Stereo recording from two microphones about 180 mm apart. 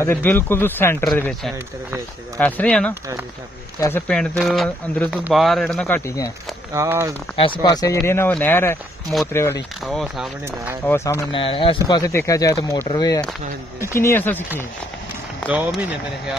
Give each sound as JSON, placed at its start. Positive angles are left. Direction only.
{"t": 0.0, "sound": "speech", "side_deg": 10}
{"t": 2.9, "sound": "speech", "side_deg": -15}
{"t": 4.1, "sound": "speech", "side_deg": 0}
{"t": 6.7, "sound": "speech", "side_deg": -15}
{"t": 7.3, "sound": "speech", "side_deg": 25}
{"t": 9.8, "sound": "speech", "side_deg": 0}
{"t": 10.9, "sound": "speech", "side_deg": 15}
{"t": 11.3, "sound": "speech", "side_deg": 30}
{"t": 15.4, "sound": "speech", "side_deg": -5}